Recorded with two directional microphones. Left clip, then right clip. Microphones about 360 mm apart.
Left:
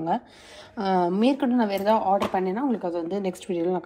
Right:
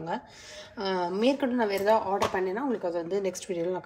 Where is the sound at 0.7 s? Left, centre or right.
Centre.